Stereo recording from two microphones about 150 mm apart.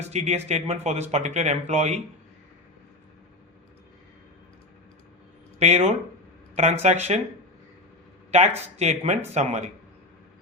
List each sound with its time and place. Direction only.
0.1 s a man's voice: 45° right (ahead or behind)
5.5 s a man's voice: 45° right (ahead or behind)
8.3 s a man's voice: 45° right (ahead or behind)